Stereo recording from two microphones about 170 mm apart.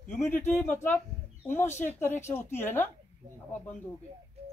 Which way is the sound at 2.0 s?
15° left (ahead or behind).